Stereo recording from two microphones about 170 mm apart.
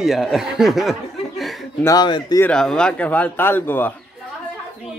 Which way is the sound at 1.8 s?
25° left (ahead or behind).